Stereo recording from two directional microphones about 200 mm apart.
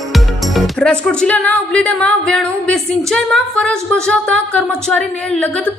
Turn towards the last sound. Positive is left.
turn(degrees=5)  # may be behind; listen again after turning